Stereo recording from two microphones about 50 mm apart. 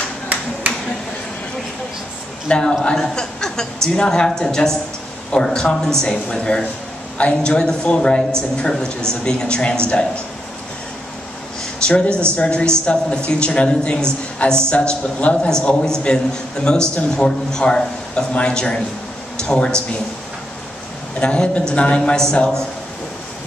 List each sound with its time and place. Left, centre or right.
2.4 s a woman's voice: centre
11.8 s a woman's voice: left
21.2 s a woman's voice: left